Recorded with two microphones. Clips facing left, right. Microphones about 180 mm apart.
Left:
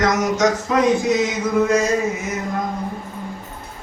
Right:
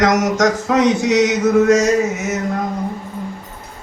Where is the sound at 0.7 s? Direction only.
85° right.